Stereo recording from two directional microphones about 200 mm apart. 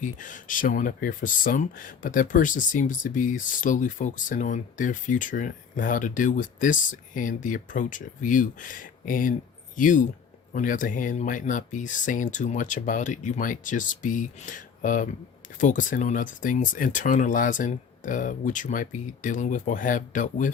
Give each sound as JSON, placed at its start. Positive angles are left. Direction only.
{"t": 0.0, "sound": "speech", "side_deg": 40}